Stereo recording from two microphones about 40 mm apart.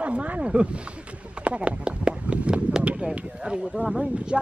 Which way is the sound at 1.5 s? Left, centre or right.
Right.